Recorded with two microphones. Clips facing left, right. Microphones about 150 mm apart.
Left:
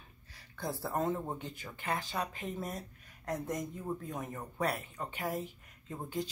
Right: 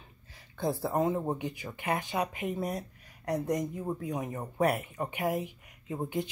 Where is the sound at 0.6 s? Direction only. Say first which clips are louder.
Right 6 dB; 20° right (ahead or behind).